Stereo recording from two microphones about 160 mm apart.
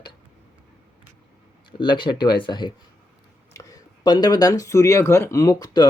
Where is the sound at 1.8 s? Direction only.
30° left (ahead or behind).